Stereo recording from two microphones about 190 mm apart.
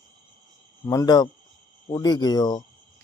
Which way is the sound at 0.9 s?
20° left (ahead or behind).